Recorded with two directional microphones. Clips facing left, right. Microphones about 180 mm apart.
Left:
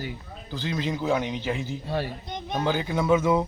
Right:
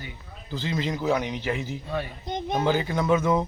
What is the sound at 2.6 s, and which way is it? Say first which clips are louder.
Speech: left 1 dB; 5° left (ahead or behind).